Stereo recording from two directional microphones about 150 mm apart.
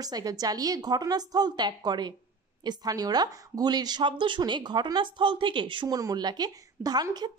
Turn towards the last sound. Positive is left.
turn(degrees=-25)  # may be behind; listen again after turning